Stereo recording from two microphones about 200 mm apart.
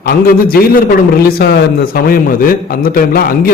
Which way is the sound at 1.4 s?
55° left (ahead or behind).